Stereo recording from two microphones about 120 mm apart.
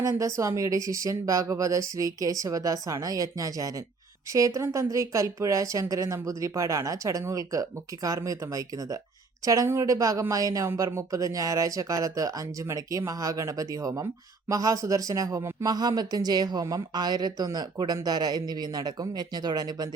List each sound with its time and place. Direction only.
0.0 s a woman's voice: 30° right (ahead or behind)